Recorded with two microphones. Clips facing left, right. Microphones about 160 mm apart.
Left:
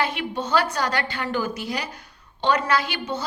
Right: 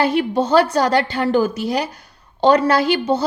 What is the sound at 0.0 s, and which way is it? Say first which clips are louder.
A woman's voice: right 9 dB; 35° right (ahead or behind).